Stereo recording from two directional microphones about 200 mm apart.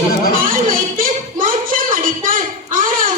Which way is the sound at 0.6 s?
45° right (ahead or behind).